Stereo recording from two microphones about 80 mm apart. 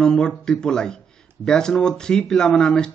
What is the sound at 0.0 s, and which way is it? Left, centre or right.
A man's voice, centre.